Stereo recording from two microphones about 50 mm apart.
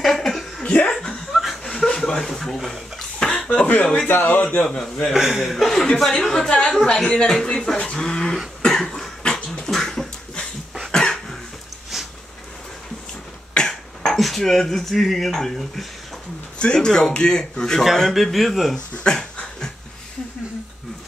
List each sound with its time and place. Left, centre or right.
0.0 s a sound: centre
1.3 s chuckle: centre
3.4 s a man's voice: left
4.6 s speech: centre
5.1 s a man's voice: centre
8.6 s cough: centre
11.9 s a sound: centre
13.6 s speech: centre
16.5 s speech: centre
18.1 s speech: centre